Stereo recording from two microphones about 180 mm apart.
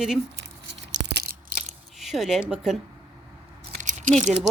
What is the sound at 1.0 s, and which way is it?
Crunch, 60° right (ahead or behind).